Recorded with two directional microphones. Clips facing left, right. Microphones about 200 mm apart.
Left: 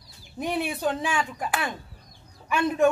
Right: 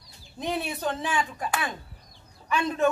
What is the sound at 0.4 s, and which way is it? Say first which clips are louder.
Speech: left 2 dB; 10° left (ahead or behind).